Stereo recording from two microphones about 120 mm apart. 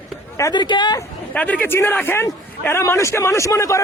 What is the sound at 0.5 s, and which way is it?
Speech, 40° left (ahead or behind).